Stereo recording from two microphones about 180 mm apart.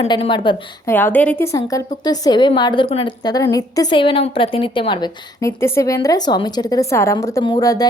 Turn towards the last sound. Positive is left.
turn(degrees=20)  # may be behind; listen again after turning